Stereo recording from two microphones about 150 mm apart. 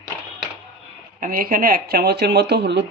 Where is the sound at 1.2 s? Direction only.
75° right (ahead or behind); by 2.6 s 90° right.